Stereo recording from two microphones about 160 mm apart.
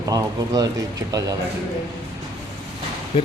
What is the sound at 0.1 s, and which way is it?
Speech, 20° right (ahead or behind).